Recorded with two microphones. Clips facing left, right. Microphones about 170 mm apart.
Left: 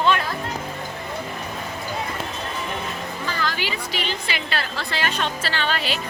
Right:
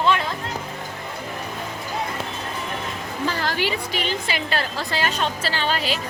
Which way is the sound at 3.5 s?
60° right (ahead or behind).